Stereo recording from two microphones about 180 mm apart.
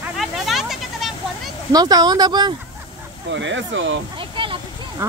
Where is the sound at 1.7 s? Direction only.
20° right (ahead or behind).